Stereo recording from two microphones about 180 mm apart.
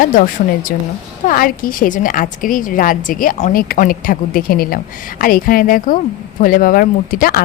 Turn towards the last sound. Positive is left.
turn(degrees=50)  # may be behind; listen again after turning